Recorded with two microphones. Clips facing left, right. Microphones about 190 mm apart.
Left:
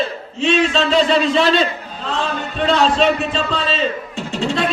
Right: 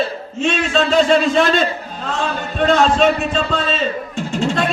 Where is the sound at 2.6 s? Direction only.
50° right (ahead or behind).